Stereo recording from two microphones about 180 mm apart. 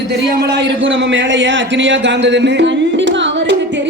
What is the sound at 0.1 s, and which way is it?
A man's voice, 75° right (ahead or behind).